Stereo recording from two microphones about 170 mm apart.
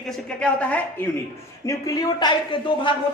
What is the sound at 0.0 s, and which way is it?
Speech, 5° left (ahead or behind).